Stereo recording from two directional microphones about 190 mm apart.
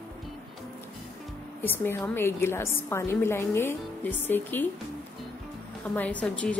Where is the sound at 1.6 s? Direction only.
10° left (ahead or behind).